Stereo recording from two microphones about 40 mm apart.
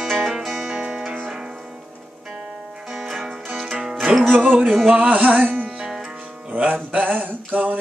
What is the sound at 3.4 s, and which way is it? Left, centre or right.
Music, centre.